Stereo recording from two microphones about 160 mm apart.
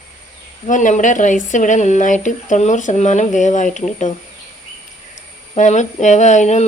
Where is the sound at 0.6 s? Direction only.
50° left (ahead or behind).